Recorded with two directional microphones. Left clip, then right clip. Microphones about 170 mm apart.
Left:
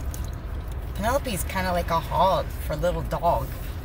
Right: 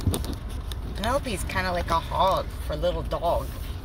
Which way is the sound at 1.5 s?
10° left (ahead or behind).